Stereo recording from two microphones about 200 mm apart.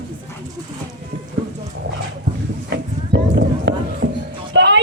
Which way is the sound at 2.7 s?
60° right (ahead or behind).